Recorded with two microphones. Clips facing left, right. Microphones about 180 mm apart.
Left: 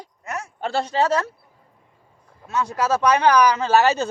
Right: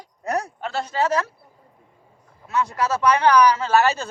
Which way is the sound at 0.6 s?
30° left (ahead or behind).